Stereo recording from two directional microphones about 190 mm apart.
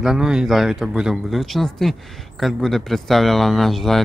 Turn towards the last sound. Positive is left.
turn(degrees=0)  # may be behind; listen again after turning